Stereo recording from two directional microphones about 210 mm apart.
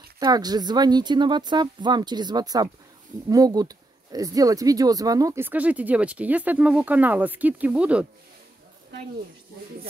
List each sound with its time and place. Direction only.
0.2 s speech: 20° right (ahead or behind)